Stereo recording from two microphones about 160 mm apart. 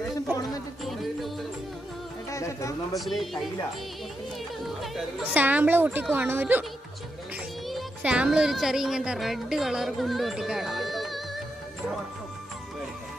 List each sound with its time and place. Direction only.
2.3 s speech: 20° left (ahead or behind)
3.0 s speech: centre (ahead or behind)
4.6 s speech: 5° right (ahead or behind)
7.6 s speech: 5° right (ahead or behind)